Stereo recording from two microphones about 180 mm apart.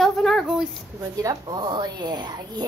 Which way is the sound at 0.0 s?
Centre (ahead or behind).